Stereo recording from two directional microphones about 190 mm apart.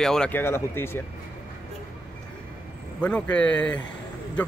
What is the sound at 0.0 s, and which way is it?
A man's voice, 5° left (ahead or behind).